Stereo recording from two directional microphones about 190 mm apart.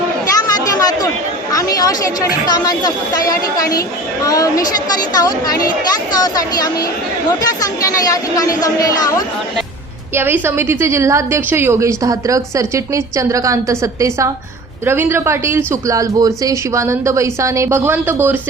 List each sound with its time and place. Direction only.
0.3 s a sound: 20° left (ahead or behind)
1.5 s a woman's voice: 20° left (ahead or behind)
10.2 s a woman's voice: 10° right (ahead or behind)